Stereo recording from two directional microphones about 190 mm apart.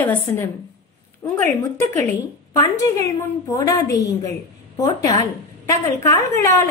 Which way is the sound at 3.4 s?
15° left (ahead or behind).